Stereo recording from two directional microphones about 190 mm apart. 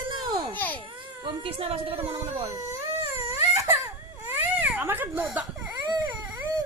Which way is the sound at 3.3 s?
15° right (ahead or behind).